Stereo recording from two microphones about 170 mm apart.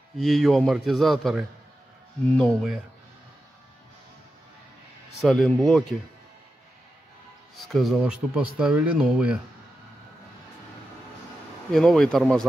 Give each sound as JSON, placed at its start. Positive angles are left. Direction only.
{"t": 0.2, "sound": "speech", "side_deg": 0}
{"t": 5.2, "sound": "speech", "side_deg": 5}
{"t": 7.5, "sound": "speech", "side_deg": 0}
{"t": 11.7, "sound": "speech", "side_deg": 5}